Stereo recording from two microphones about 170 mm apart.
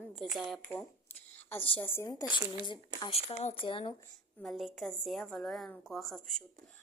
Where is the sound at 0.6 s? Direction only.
10° left (ahead or behind).